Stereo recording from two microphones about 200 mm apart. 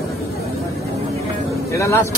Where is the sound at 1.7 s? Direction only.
15° left (ahead or behind).